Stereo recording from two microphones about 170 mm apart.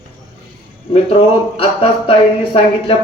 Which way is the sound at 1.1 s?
35° left (ahead or behind).